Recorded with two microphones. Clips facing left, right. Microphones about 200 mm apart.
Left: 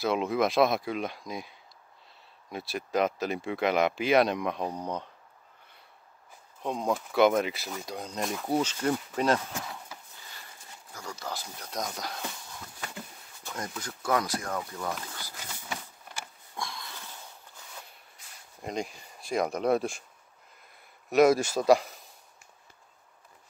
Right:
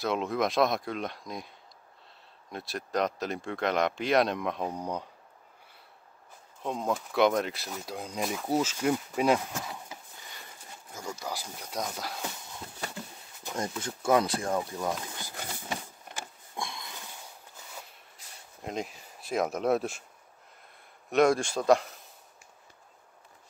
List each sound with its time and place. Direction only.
0.0 s speech: centre (ahead or behind)
2.5 s speech: centre (ahead or behind)
6.6 s speech: centre (ahead or behind)
13.4 s speech: 20° right (ahead or behind)
16.2 s sniff: 20° right (ahead or behind)
18.6 s speech: centre (ahead or behind)
21.1 s speech: 5° left (ahead or behind)